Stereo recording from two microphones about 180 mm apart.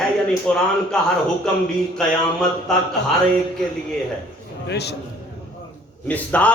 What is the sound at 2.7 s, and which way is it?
Speech, 5° left (ahead or behind).